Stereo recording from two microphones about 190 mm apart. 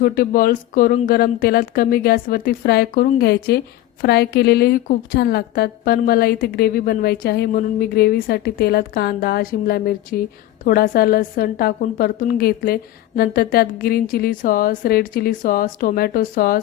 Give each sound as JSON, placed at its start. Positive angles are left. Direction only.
{"t": 0.0, "sound": "a woman's voice", "side_deg": 50}